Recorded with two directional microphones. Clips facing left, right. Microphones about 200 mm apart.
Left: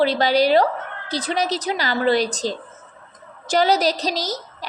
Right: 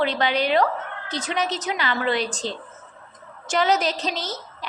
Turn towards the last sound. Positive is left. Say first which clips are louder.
# left 4 dB
turn(degrees=40)  # may be behind; listen again after turning